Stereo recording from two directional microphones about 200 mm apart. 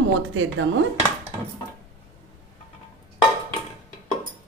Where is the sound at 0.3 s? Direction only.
85° right.